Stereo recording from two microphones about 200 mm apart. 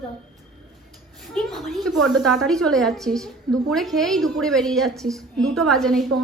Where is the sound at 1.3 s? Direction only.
Centre (ahead or behind).